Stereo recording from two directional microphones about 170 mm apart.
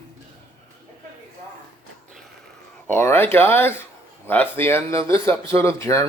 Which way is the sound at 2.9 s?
15° left (ahead or behind).